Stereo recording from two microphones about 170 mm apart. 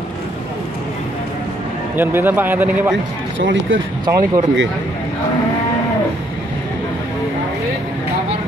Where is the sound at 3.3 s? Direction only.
90° right.